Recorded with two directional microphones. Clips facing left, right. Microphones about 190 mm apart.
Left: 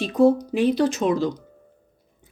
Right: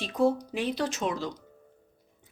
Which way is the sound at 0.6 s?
40° left (ahead or behind).